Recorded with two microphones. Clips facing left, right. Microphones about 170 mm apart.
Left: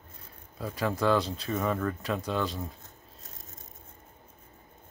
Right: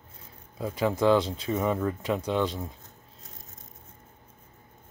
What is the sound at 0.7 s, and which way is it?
Speech, 20° right (ahead or behind).